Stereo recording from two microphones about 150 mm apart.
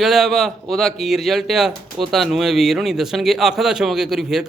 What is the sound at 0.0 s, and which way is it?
Speech, centre (ahead or behind).